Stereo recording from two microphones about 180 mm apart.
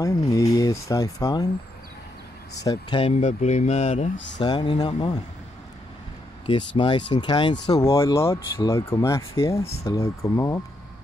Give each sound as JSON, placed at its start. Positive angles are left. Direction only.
{"t": 0.0, "sound": "speech", "side_deg": 20}
{"t": 2.6, "sound": "speech", "side_deg": 20}
{"t": 3.0, "sound": "speech", "side_deg": 35}
{"t": 4.4, "sound": "speech", "side_deg": 25}
{"t": 6.8, "sound": "speech", "side_deg": 25}